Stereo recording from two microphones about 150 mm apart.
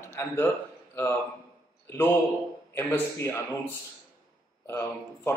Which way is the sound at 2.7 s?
20° left (ahead or behind).